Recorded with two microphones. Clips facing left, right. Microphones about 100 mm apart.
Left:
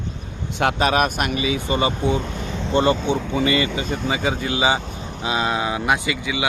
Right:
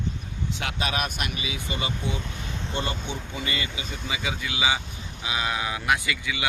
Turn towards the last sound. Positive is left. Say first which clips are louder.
# left 6 dB
turn(degrees=20)  # may be behind; listen again after turning